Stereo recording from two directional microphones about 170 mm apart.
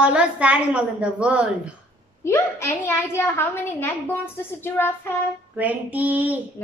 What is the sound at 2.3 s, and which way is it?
A child's voice, 15° left (ahead or behind).